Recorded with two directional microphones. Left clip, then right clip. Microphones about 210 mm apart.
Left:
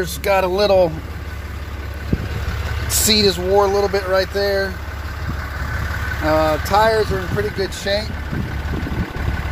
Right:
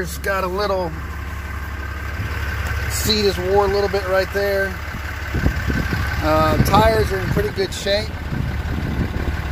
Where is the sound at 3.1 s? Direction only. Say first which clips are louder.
Left 2 dB; 20° left (ahead or behind); by 4.7 s centre (ahead or behind).